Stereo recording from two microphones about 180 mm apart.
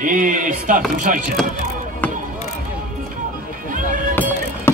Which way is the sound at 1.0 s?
45° right (ahead or behind).